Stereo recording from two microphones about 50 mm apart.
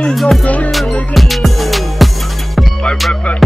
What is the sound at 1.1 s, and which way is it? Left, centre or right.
Music, centre.